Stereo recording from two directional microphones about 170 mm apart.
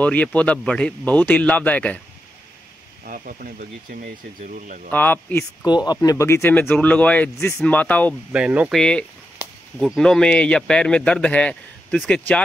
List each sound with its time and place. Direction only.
0.0 s speech: 10° left (ahead or behind)
3.1 s speech: 55° right (ahead or behind)
4.9 s speech: 10° left (ahead or behind)
5.7 s speech: 25° left (ahead or behind)
8.3 s speech: 5° right (ahead or behind)
8.7 s speech: 5° left (ahead or behind)